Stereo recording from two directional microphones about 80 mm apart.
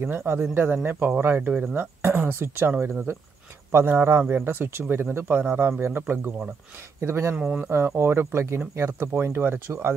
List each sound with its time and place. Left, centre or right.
0.0 s speech: right
4.3 s speech: right
7.3 s speech: centre
7.7 s speech: right